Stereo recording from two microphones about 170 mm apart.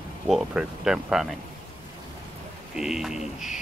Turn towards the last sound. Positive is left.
turn(degrees=0)  # may be behind; listen again after turning